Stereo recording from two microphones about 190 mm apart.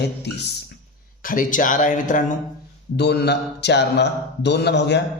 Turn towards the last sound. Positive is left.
turn(degrees=65)  # may be behind; listen again after turning